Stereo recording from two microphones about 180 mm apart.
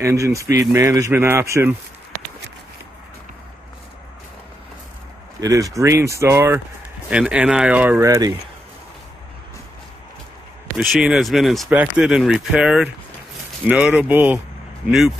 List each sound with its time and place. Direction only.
0.0 s speech: 15° right (ahead or behind)
5.4 s speech: 20° right (ahead or behind)
10.8 s speech: 5° right (ahead or behind)